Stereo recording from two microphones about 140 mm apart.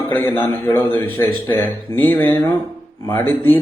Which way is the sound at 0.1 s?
15° left (ahead or behind).